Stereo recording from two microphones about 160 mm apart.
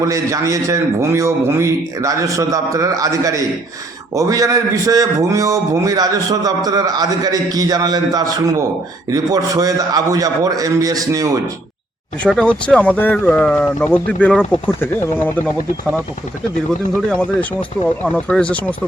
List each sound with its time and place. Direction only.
0.0 s a man's voice: 20° right (ahead or behind)
12.2 s speech: 5° left (ahead or behind)
17.1 s speech: 10° left (ahead or behind)